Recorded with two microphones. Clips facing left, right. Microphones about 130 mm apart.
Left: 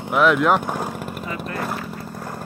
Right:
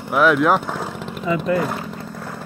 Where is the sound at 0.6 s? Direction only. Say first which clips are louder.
Left 1 dB; 15° left (ahead or behind).